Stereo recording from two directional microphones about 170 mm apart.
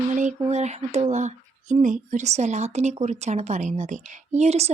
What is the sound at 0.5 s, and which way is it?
Speech, 40° right (ahead or behind).